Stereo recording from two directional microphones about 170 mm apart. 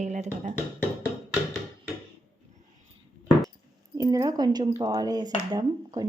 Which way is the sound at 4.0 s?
20° right (ahead or behind).